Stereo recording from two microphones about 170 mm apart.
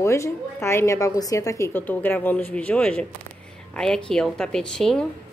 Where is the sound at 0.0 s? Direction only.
15° left (ahead or behind).